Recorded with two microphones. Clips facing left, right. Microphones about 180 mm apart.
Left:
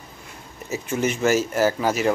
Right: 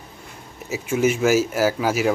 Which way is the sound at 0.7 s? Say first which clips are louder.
Right 4 dB; 10° right (ahead or behind).